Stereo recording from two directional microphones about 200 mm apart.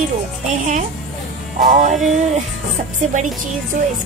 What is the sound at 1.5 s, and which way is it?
Speech, 40° right (ahead or behind).